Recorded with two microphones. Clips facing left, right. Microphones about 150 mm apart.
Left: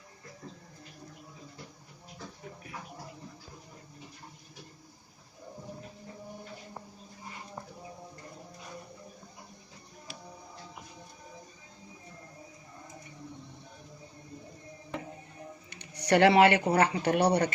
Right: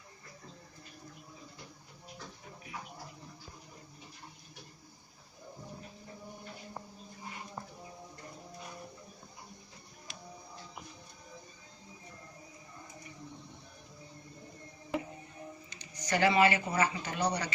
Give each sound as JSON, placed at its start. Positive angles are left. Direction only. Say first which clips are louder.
{"t": 10.1, "sound": "music", "louder": "left 4 dB", "side_deg": 0}
{"t": 15.7, "sound": "speech", "louder": "left 9 dB", "side_deg": 65}